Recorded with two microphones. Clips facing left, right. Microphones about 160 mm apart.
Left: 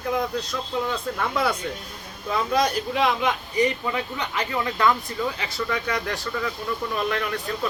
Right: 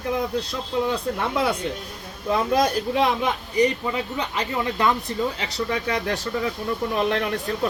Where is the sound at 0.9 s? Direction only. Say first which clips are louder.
Right 2 dB; 20° right (ahead or behind).